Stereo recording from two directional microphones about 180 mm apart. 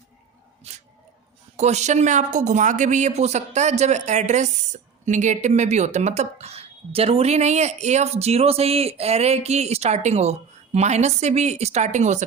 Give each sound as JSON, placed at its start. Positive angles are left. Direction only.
{"t": 0.7, "sound": "speech", "side_deg": -35}